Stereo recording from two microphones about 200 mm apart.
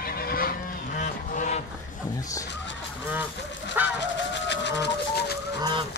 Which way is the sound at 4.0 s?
60° left (ahead or behind).